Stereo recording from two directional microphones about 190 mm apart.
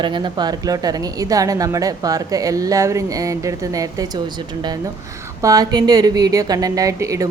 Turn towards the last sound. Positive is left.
turn(degrees=-15)  # may be behind; listen again after turning